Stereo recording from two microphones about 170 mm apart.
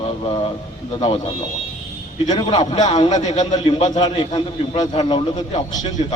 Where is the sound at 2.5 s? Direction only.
30° left (ahead or behind).